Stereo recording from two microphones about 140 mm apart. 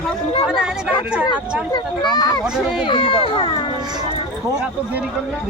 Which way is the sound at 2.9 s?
40° left (ahead or behind).